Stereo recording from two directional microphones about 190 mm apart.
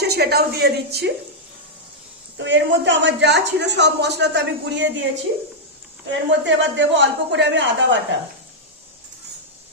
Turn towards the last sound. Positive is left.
turn(degrees=-70)  # may be behind; listen again after turning